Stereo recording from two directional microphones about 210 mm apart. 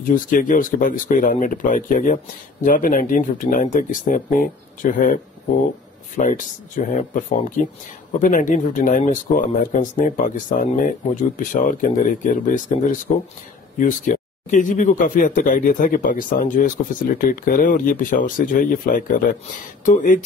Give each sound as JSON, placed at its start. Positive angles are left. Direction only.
{"t": 0.0, "sound": "speech", "side_deg": 40}
{"t": 6.1, "sound": "speech", "side_deg": 35}